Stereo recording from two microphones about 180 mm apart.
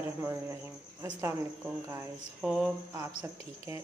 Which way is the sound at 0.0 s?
15° right (ahead or behind).